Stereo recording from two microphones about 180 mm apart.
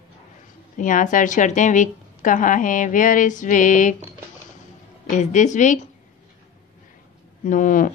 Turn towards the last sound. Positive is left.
turn(degrees=45)  # may be behind; listen again after turning